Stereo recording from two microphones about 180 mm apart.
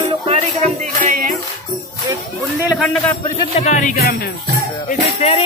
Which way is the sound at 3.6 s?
45° left (ahead or behind).